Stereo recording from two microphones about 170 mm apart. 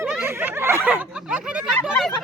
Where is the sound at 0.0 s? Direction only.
10° right (ahead or behind).